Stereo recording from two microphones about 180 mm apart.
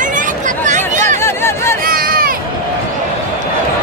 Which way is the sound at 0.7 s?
45° right (ahead or behind).